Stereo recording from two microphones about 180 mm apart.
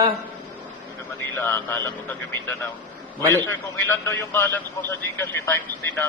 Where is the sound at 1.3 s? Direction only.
15° left (ahead or behind).